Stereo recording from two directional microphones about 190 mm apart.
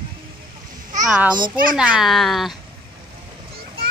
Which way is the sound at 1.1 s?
5° right (ahead or behind).